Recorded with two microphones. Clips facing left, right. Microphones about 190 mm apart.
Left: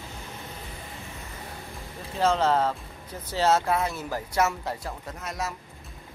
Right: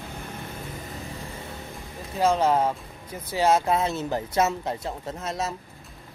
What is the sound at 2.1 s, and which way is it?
Speech, 10° right (ahead or behind).